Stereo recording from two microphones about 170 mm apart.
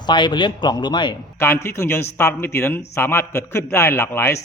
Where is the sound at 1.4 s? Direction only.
15° left (ahead or behind).